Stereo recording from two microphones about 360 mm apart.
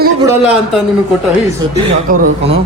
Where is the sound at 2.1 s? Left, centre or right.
Right.